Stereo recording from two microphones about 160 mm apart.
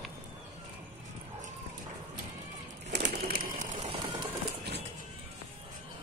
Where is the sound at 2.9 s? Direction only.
90° right.